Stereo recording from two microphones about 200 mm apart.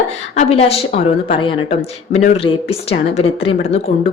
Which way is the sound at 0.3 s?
30° left (ahead or behind).